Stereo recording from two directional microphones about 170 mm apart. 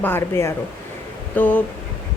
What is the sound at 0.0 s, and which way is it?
Speech, 15° left (ahead or behind).